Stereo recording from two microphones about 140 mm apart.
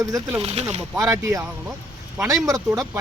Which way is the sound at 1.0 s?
25° right (ahead or behind).